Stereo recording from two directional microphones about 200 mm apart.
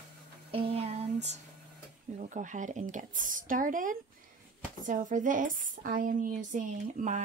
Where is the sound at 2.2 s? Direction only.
40° right (ahead or behind).